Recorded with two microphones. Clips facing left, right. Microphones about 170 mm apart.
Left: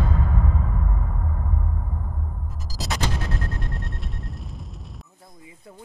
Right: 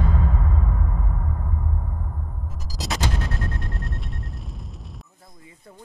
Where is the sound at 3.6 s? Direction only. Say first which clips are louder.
Even; centre (ahead or behind).